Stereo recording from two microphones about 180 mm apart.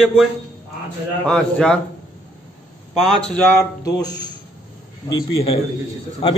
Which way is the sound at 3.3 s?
10° left (ahead or behind).